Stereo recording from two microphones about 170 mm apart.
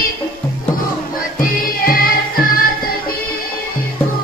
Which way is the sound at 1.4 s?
60° left (ahead or behind).